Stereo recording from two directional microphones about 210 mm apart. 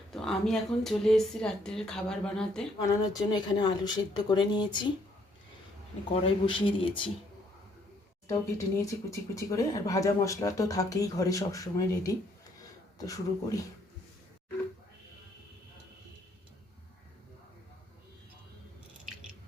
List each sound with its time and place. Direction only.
0.1 s speech: centre (ahead or behind)
2.7 s speech: 15° left (ahead or behind)
6.2 s speech: 25° left (ahead or behind)
8.3 s speech: 15° left (ahead or behind)